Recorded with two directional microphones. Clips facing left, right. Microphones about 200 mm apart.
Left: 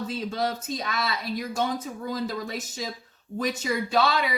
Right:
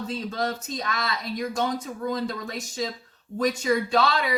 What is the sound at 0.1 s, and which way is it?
Speech, 5° left (ahead or behind).